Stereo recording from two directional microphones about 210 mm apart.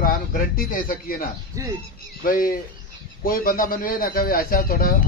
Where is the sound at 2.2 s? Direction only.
45° left (ahead or behind).